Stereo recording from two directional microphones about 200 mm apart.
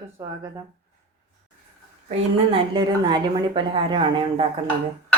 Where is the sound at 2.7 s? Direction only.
20° right (ahead or behind).